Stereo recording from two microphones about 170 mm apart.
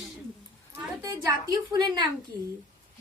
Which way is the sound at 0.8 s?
20° right (ahead or behind).